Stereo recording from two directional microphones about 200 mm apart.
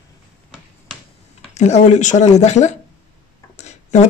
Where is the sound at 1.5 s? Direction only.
35° left (ahead or behind).